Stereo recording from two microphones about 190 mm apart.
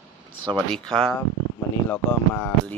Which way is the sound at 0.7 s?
Centre (ahead or behind).